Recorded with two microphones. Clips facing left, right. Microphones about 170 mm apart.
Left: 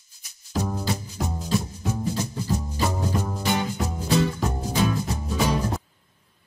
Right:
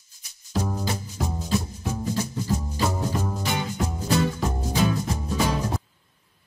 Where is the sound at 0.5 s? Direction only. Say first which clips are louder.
Left 1 dB; centre (ahead or behind).